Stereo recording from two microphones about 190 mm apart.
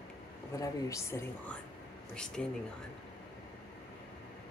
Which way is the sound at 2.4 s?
Centre (ahead or behind).